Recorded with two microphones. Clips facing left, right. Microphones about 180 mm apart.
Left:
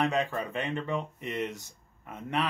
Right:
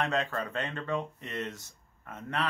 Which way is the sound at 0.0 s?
15° left (ahead or behind).